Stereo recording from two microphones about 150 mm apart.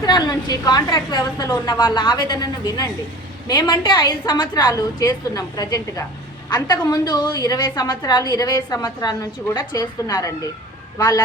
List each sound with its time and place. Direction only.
0.0 s a woman's voice: 25° left (ahead or behind)